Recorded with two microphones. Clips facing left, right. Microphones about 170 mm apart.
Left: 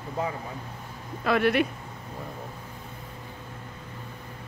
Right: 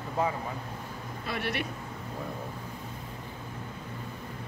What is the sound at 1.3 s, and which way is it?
Speech, 90° left.